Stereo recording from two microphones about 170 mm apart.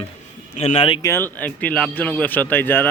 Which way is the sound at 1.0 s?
15° left (ahead or behind).